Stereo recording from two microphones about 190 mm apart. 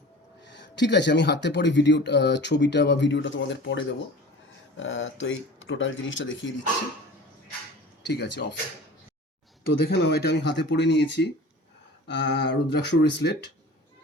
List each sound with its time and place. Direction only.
0.5 s speech: 65° left (ahead or behind)
4.8 s speech: 85° left
8.0 s speech: 60° left (ahead or behind)
9.8 s speech: 60° left (ahead or behind)